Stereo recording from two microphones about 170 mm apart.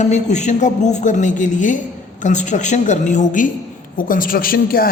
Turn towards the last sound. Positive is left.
turn(degrees=60)  # may be behind; listen again after turning